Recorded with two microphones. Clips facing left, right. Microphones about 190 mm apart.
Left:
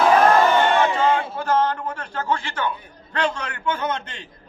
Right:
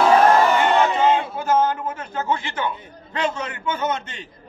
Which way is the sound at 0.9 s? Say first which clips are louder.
Right 2 dB; 20° right (ahead or behind).